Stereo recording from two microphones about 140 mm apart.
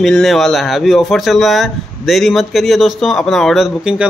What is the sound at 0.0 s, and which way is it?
A man's voice, centre (ahead or behind).